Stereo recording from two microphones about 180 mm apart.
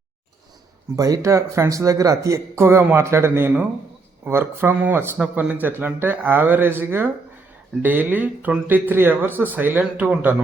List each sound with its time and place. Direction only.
0.9 s speech: 20° right (ahead or behind)